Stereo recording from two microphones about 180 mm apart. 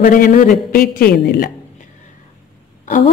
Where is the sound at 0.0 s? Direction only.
50° left (ahead or behind).